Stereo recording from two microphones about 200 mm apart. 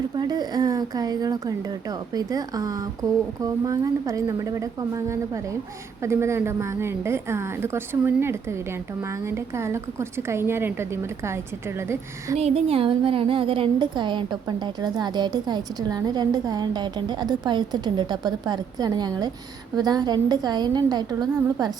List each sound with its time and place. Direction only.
0.2 s a woman's voice: 20° right (ahead or behind)
12.4 s a woman's voice: 30° right (ahead or behind)